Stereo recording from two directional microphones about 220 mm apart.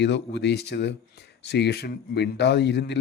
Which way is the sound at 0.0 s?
50° left (ahead or behind).